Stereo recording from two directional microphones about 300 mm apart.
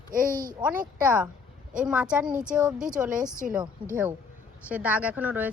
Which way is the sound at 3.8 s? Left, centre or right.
Centre.